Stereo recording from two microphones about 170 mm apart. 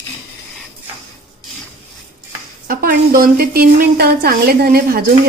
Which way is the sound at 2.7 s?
60° right (ahead or behind).